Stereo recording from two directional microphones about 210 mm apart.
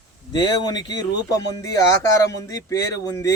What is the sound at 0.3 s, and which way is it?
Speech, 20° left (ahead or behind).